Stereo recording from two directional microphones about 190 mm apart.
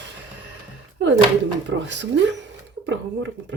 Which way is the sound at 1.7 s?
70° right (ahead or behind).